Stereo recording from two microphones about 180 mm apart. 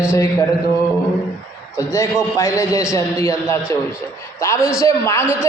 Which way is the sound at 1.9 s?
15° left (ahead or behind).